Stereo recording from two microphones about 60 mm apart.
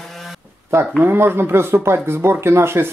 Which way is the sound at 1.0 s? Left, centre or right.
Right.